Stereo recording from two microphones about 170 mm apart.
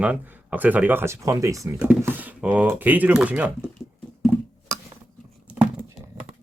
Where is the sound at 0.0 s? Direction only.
10° right (ahead or behind).